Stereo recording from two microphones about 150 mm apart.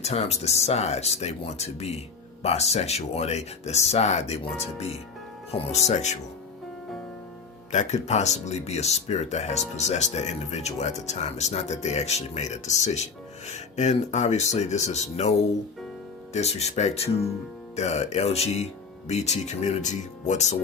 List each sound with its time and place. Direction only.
0.0 s speech: 45° left (ahead or behind)
7.7 s speech: 50° left (ahead or behind)